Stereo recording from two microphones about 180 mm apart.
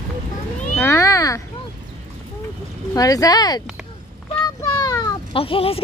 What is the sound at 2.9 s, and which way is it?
Speech, 20° left (ahead or behind).